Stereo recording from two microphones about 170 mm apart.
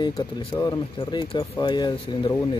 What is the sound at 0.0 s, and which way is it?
Speech, 35° left (ahead or behind).